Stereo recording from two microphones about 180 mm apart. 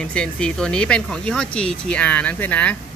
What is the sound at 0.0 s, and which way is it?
Speech, 5° left (ahead or behind).